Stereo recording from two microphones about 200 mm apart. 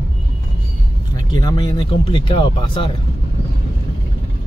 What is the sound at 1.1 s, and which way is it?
Speech, 20° left (ahead or behind).